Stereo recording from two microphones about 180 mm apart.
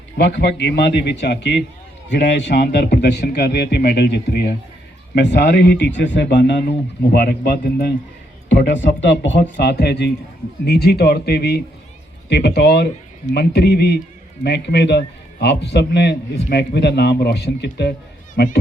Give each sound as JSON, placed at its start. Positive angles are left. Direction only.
{"t": 0.3, "sound": "a man's voice", "side_deg": 70}
{"t": 5.1, "sound": "a man's voice", "side_deg": 70}
{"t": 8.4, "sound": "a man's voice", "side_deg": 80}